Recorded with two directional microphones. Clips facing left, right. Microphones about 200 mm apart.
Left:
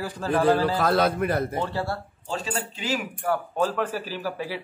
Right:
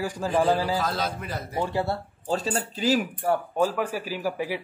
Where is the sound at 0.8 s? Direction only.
60° left (ahead or behind).